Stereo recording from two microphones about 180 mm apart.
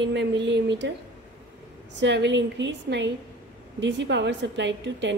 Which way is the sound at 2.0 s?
75° right (ahead or behind).